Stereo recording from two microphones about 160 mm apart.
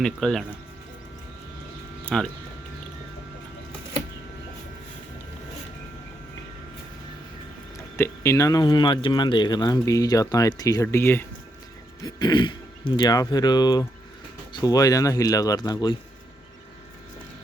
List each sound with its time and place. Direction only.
0.0 s speech: 5° left (ahead or behind)
2.0 s speech: 5° left (ahead or behind)
7.9 s speech: 15° left (ahead or behind)
12.0 s speech: 30° left (ahead or behind)